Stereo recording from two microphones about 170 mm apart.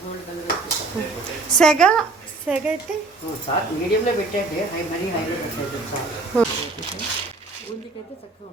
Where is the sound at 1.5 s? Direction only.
5° left (ahead or behind).